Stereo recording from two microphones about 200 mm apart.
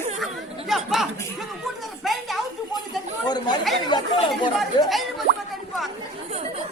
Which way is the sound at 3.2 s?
20° left (ahead or behind).